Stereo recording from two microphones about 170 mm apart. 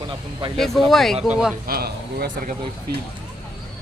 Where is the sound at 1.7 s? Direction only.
65° right (ahead or behind).